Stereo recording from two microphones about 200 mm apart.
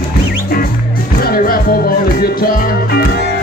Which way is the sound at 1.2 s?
45° left (ahead or behind).